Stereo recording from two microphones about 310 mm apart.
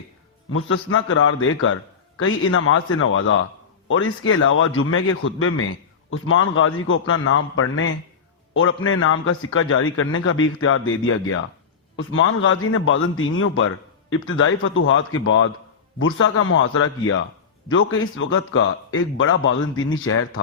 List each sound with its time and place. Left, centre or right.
0.5 s a man's voice: left